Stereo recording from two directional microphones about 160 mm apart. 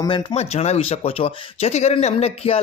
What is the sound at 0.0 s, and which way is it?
Speech, 30° left (ahead or behind).